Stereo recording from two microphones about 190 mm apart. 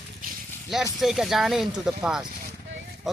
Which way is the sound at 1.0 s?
Centre (ahead or behind).